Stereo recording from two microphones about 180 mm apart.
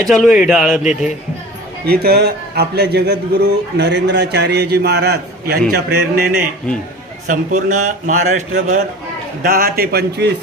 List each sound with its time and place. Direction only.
0.1 s a man's voice: centre (ahead or behind)
1.9 s a man's voice: 60° right (ahead or behind)
7.3 s a man's voice: 45° right (ahead or behind); by 10.3 s 65° right (ahead or behind)